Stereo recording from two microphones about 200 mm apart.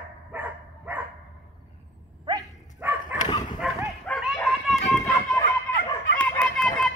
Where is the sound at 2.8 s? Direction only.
10° right (ahead or behind).